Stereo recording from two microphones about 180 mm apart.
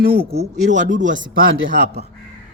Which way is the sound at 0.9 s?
90° right.